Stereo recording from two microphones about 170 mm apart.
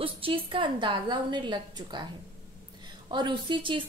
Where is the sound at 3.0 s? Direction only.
25° right (ahead or behind).